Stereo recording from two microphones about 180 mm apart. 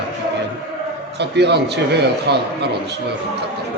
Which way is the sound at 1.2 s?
70° right (ahead or behind).